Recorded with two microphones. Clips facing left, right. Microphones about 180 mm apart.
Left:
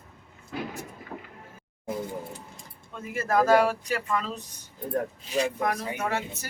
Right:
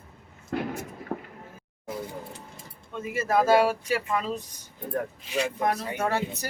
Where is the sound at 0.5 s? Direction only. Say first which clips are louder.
Right 4 dB; 60° right (ahead or behind).